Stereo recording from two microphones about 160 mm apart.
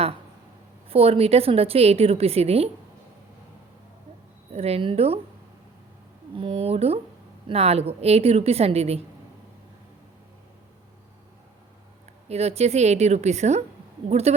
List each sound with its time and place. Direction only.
0.9 s a woman's voice: 35° right (ahead or behind)
4.5 s a woman's voice: 40° right (ahead or behind)
6.3 s a woman's voice: 35° right (ahead or behind)
12.3 s a woman's voice: 40° right (ahead or behind)